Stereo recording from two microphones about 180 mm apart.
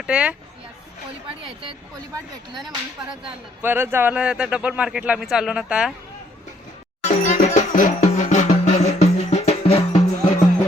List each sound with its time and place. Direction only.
0.0 s speech: 5° right (ahead or behind)
3.6 s speech: 10° right (ahead or behind)
7.0 s music: 40° left (ahead or behind)